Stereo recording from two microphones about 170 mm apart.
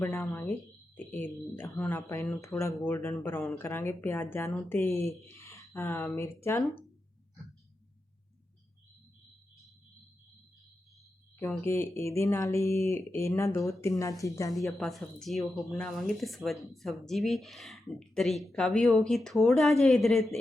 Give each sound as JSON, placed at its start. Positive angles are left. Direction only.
{"t": 0.0, "sound": "speech", "side_deg": 15}
{"t": 11.6, "sound": "speech", "side_deg": 15}
{"t": 14.8, "sound": "speech", "side_deg": 0}